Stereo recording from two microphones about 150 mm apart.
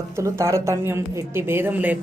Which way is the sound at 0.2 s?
20° right (ahead or behind).